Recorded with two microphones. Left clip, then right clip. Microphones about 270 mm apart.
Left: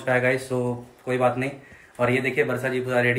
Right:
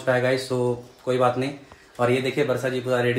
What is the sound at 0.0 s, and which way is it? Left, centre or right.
Speech, centre.